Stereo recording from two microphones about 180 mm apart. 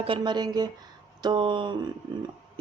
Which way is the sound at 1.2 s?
25° right (ahead or behind).